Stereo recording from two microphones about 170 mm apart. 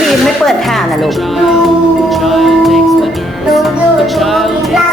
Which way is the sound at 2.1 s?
Centre (ahead or behind).